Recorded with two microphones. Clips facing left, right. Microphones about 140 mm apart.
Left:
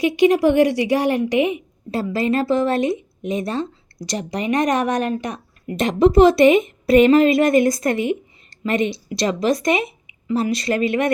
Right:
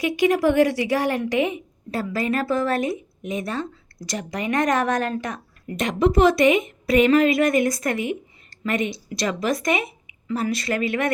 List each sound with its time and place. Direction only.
0.0 s a woman's voice: 25° left (ahead or behind)
5.7 s a woman's voice: 30° left (ahead or behind)